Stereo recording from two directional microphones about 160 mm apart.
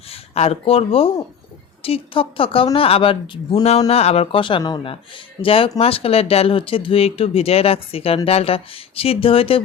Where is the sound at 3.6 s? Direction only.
40° left (ahead or behind).